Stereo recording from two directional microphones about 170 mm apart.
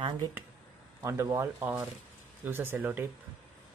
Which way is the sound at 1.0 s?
15° right (ahead or behind).